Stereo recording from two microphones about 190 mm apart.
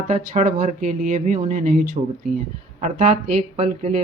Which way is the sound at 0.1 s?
40° right (ahead or behind).